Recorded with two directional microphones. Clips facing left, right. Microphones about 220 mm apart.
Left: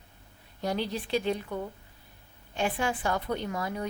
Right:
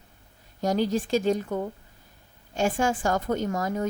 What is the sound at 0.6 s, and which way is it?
A woman's voice, 45° right (ahead or behind).